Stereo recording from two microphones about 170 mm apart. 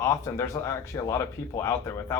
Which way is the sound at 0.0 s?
20° left (ahead or behind).